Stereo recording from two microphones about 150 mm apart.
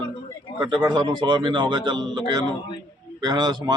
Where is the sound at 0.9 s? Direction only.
30° right (ahead or behind).